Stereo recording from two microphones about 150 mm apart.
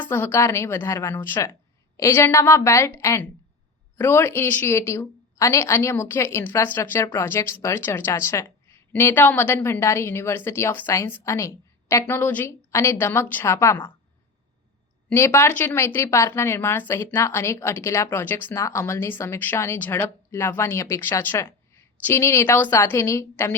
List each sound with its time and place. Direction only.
0.0 s a woman's voice: 15° left (ahead or behind)
15.1 s speech: 15° left (ahead or behind)